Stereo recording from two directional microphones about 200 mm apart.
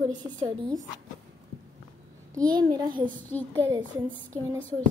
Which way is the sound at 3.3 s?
10° left (ahead or behind).